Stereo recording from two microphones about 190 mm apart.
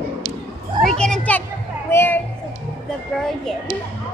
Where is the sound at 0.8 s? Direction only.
5° left (ahead or behind).